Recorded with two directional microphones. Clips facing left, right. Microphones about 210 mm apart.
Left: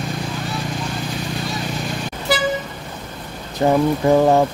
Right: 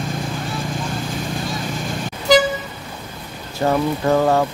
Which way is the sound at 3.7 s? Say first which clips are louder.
Left 3 dB; 15° left (ahead or behind).